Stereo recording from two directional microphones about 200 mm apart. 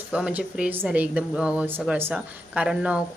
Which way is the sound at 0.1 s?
5° right (ahead or behind).